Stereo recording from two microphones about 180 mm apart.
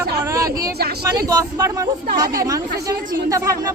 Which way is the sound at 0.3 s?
20° right (ahead or behind).